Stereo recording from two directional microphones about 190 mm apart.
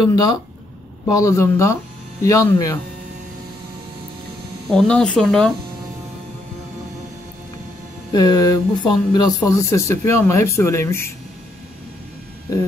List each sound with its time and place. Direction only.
0.1 s speech: 20° left (ahead or behind)
4.6 s speech: 5° left (ahead or behind)
8.1 s speech: 20° left (ahead or behind)